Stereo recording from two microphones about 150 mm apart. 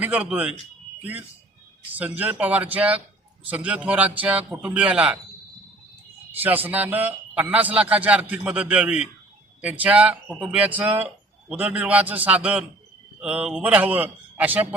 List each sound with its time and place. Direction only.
0.0 s speech: 10° right (ahead or behind)
2.0 s speech: 10° right (ahead or behind)
6.4 s speech: 10° right (ahead or behind)